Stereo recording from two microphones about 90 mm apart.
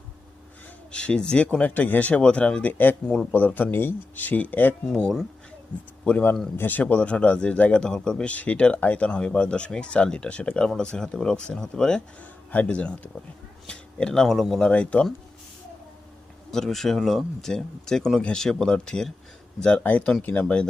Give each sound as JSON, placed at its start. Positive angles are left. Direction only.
{"t": 0.9, "sound": "speech", "side_deg": 10}
{"t": 4.9, "sound": "speech", "side_deg": 10}
{"t": 14.7, "sound": "speech", "side_deg": 15}
{"t": 16.5, "sound": "speech", "side_deg": 5}